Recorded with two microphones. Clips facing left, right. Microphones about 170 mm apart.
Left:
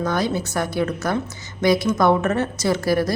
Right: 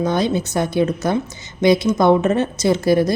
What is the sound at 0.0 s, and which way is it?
Speech, 20° right (ahead or behind).